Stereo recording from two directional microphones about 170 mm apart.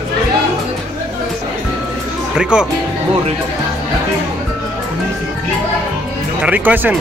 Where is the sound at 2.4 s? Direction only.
5° right (ahead or behind).